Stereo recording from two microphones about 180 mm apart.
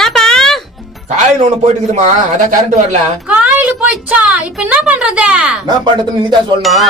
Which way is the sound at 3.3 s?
5° right (ahead or behind).